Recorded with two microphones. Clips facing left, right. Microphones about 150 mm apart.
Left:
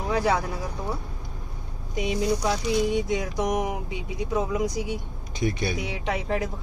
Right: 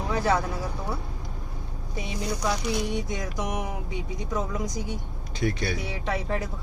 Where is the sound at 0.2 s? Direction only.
15° left (ahead or behind).